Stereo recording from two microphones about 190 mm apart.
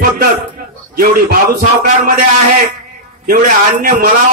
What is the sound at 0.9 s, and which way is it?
A man's voice, 45° right (ahead or behind).